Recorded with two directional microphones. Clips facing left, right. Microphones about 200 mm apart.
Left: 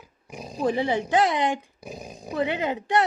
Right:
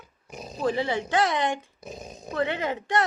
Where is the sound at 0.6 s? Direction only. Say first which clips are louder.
Left 2 dB; 15° left (ahead or behind).